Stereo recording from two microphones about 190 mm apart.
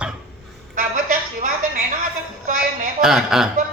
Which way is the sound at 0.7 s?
45° right (ahead or behind).